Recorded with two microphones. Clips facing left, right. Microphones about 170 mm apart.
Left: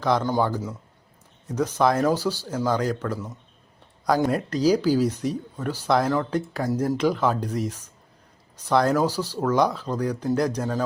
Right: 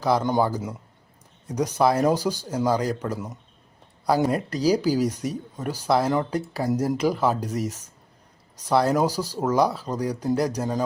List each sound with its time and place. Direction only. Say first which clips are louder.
0.0 s speech: right 1 dB; 10° right (ahead or behind)